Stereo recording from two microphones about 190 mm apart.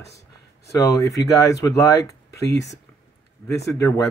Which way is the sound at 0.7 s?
15° left (ahead or behind).